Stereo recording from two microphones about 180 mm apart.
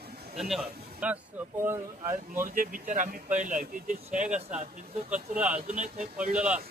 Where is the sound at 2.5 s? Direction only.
50° right (ahead or behind).